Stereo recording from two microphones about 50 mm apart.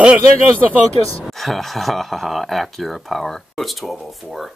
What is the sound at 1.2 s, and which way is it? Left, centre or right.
Speech, centre.